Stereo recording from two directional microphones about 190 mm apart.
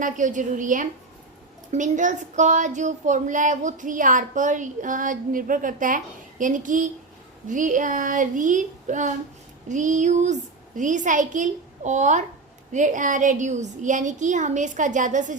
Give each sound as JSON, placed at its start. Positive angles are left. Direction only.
{"t": 0.0, "sound": "child singing", "side_deg": -40}
{"t": 1.7, "sound": "speech", "side_deg": -40}
{"t": 6.4, "sound": "child singing", "side_deg": -45}
{"t": 9.6, "sound": "speech", "side_deg": -40}